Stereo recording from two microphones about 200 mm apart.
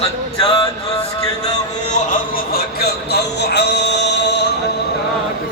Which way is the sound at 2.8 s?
55° left (ahead or behind).